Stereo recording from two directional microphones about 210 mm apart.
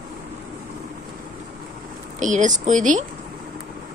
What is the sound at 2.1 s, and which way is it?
Speech, 35° right (ahead or behind).